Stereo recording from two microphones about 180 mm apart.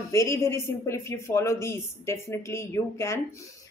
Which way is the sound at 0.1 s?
15° left (ahead or behind).